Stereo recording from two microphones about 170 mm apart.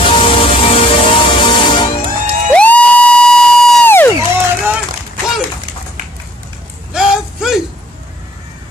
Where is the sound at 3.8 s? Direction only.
10° left (ahead or behind).